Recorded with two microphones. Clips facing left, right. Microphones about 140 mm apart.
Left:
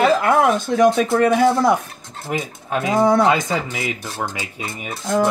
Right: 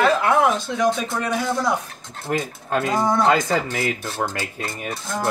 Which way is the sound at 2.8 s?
65° left (ahead or behind).